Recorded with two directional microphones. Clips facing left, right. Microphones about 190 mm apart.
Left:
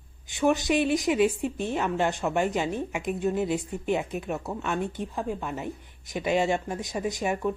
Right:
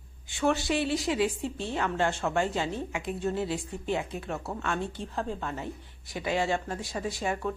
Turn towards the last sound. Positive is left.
turn(degrees=15)  # may be behind; listen again after turning